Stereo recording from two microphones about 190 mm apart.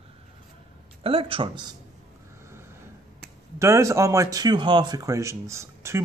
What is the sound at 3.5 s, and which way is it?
Speech, 15° right (ahead or behind).